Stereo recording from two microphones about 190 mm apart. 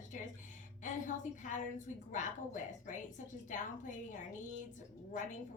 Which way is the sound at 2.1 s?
40° left (ahead or behind).